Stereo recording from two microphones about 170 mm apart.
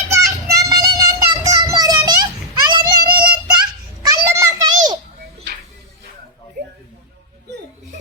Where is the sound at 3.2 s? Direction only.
25° right (ahead or behind).